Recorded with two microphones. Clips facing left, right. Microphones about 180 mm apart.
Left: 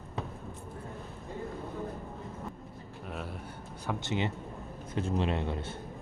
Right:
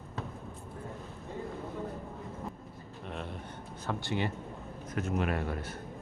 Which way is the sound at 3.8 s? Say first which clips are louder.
Left 1 dB; 20° left (ahead or behind).